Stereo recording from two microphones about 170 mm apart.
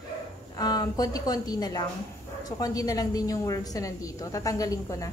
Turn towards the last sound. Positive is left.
turn(degrees=20)  # may be behind; listen again after turning